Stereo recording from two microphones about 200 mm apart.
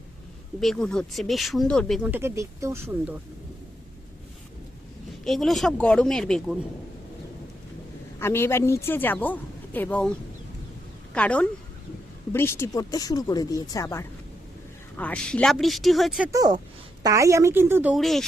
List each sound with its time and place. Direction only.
0.6 s speech: centre (ahead or behind)
5.2 s speech: centre (ahead or behind)
8.2 s a woman's voice: 10° left (ahead or behind)
11.1 s a woman's voice: 5° left (ahead or behind)
16.3 s a woman's voice: 20° right (ahead or behind)
17.9 s speech: centre (ahead or behind)